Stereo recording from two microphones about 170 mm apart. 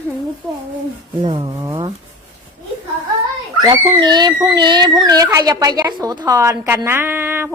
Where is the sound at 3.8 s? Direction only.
25° right (ahead or behind).